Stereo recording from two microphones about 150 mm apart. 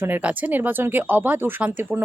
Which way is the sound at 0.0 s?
10° right (ahead or behind).